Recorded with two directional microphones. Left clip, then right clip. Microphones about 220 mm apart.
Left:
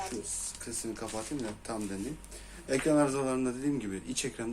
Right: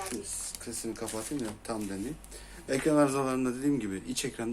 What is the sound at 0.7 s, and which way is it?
Speech, 10° right (ahead or behind).